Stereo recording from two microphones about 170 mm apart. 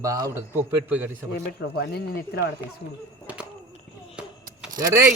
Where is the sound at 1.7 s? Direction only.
70° left (ahead or behind).